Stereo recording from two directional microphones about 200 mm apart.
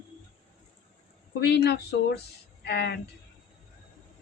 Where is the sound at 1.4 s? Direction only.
55° left (ahead or behind).